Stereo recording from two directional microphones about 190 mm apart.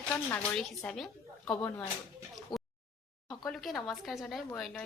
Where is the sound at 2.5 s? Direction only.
20° left (ahead or behind).